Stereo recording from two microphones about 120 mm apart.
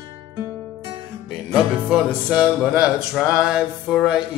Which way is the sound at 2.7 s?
10° right (ahead or behind).